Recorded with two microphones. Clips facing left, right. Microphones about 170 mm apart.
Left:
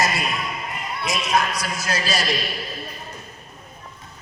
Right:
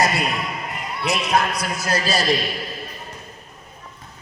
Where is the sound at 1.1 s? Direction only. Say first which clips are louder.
Right 2 dB; 60° right (ahead or behind).